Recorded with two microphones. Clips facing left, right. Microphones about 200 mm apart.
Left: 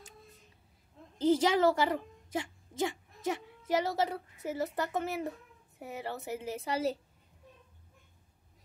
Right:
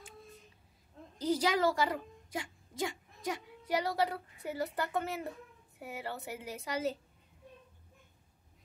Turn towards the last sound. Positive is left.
turn(degrees=30)  # may be behind; listen again after turning